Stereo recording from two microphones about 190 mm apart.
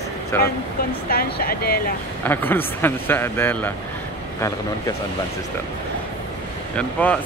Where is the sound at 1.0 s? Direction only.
50° left (ahead or behind).